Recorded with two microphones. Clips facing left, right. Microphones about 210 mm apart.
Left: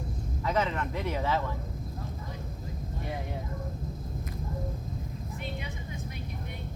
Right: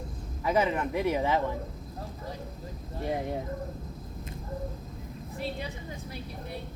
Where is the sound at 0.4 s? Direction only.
10° right (ahead or behind).